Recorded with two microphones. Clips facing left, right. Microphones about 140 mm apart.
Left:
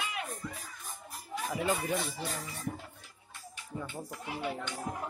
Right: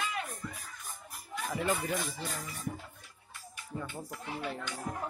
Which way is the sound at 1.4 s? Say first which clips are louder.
Even; 10° left (ahead or behind).